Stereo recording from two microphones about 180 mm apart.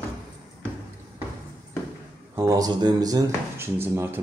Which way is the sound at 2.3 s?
15° right (ahead or behind).